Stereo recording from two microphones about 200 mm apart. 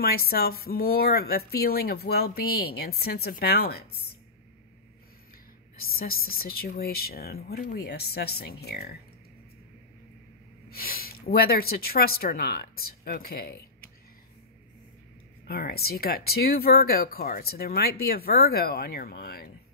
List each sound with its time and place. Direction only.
0.0 s speech: 50° left (ahead or behind)
5.8 s speech: 50° left (ahead or behind)
10.7 s speech: 50° left (ahead or behind)
15.4 s speech: 50° left (ahead or behind)